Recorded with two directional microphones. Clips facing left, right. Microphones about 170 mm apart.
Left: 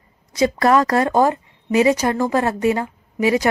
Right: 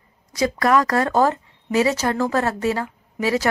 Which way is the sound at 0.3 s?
25° left (ahead or behind).